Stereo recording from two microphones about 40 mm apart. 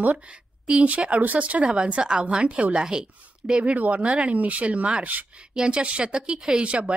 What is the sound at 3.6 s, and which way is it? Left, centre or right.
Speech, right.